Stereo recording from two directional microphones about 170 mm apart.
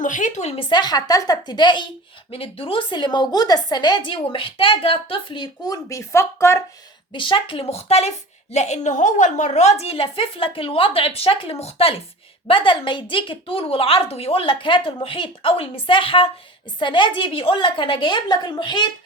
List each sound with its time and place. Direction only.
0.0 s a woman's voice: 45° left (ahead or behind); by 6.6 s 15° left (ahead or behind)
7.1 s a woman's voice: 30° left (ahead or behind)